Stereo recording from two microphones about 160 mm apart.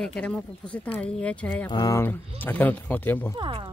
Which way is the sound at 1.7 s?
20° left (ahead or behind).